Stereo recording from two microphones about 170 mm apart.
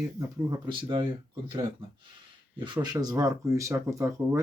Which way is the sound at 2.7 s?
25° right (ahead or behind).